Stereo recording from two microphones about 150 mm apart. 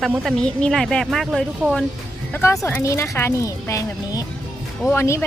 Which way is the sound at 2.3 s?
20° left (ahead or behind).